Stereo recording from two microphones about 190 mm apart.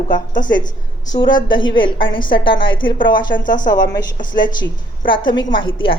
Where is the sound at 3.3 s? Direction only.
45° left (ahead or behind).